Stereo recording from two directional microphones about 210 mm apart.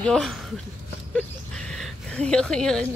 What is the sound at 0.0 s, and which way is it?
Speech, centre (ahead or behind).